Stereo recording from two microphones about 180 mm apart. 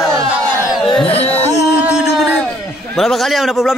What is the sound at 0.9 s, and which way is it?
Music, 30° left (ahead or behind).